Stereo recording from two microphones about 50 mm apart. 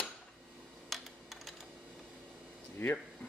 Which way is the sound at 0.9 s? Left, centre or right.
Centre.